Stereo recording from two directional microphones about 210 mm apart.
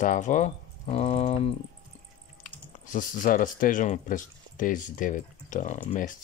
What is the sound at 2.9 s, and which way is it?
Speech, 40° left (ahead or behind).